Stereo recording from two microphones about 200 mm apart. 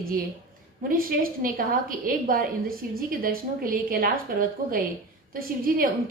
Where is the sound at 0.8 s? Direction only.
45° right (ahead or behind).